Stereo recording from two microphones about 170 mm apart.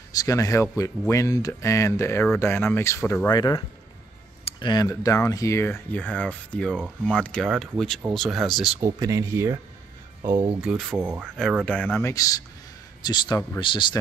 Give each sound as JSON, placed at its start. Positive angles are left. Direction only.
{"t": 0.1, "sound": "speech", "side_deg": 20}
{"t": 8.8, "sound": "speech", "side_deg": -20}
{"t": 10.6, "sound": "speech", "side_deg": 0}
{"t": 11.0, "sound": "speech", "side_deg": -10}
{"t": 11.6, "sound": "speech", "side_deg": 10}